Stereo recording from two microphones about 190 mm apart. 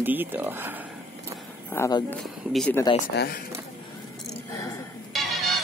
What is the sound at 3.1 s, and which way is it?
Speech, 60° left (ahead or behind).